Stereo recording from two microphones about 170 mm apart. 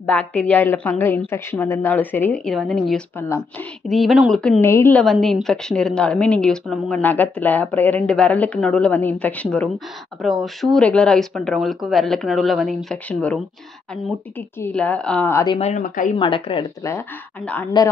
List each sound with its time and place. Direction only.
0.0 s a woman's voice: 10° left (ahead or behind)
3.2 s a woman's voice: 15° left (ahead or behind)
3.9 s a woman's voice: centre (ahead or behind)
5.0 s a woman's voice: centre (ahead or behind)
14.6 s a woman's voice: 10° left (ahead or behind)
15.6 s a woman's voice: 45° left (ahead or behind)
16.2 s speech: 30° left (ahead or behind)
17.8 s speech: 25° left (ahead or behind)